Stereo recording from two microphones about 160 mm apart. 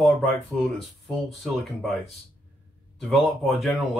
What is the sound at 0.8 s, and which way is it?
Speech, centre (ahead or behind).